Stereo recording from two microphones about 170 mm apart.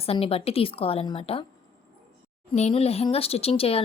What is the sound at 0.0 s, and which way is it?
Speech, 35° left (ahead or behind).